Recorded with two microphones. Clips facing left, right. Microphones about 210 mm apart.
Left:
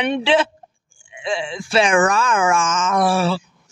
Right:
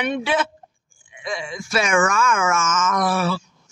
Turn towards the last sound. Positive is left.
turn(degrees=30)  # may be behind; listen again after turning